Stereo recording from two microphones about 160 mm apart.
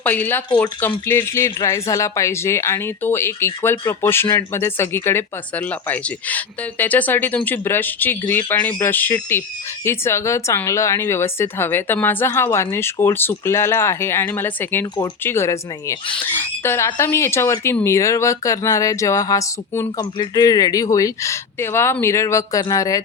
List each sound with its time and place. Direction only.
0.0 s speech: 10° left (ahead or behind)